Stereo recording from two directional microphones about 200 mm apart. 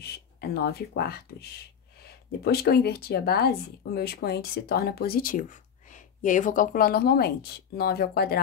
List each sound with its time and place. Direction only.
0.0 s speech: 50° left (ahead or behind)